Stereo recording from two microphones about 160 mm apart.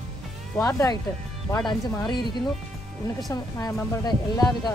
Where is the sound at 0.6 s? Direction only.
20° left (ahead or behind).